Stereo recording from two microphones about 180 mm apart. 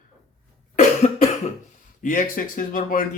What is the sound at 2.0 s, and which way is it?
Speech, 50° left (ahead or behind).